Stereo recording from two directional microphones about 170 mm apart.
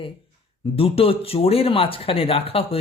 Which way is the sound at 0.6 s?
35° left (ahead or behind).